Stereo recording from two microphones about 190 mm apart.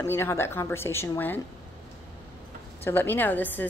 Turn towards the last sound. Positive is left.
turn(degrees=10)  # may be behind; listen again after turning